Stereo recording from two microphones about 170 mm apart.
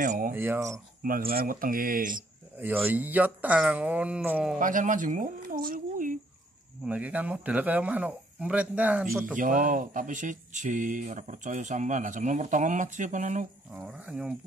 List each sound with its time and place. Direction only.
0.0 s speech: 50° right (ahead or behind)
0.3 s speech: 15° right (ahead or behind)
1.0 s speech: 60° right (ahead or behind)
2.6 s speech: 10° right (ahead or behind)
4.6 s speech: 50° right (ahead or behind)
6.8 s speech: 10° right (ahead or behind)
9.4 s speech: 50° right (ahead or behind)
13.7 s speech: 5° right (ahead or behind)